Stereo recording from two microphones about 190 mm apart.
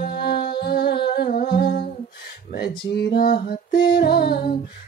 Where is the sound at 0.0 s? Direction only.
60° left (ahead or behind).